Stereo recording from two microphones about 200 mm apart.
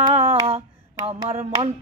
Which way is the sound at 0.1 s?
35° right (ahead or behind).